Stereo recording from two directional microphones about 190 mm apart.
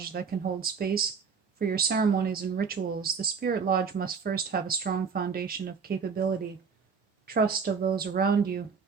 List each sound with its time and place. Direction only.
0.0 s speech: 55° right (ahead or behind)
7.3 s speech: 55° right (ahead or behind)